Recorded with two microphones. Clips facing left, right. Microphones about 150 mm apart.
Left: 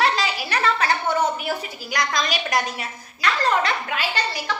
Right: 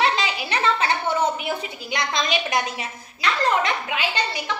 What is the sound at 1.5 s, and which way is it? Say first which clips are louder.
A woman's voice: even; 25° right (ahead or behind).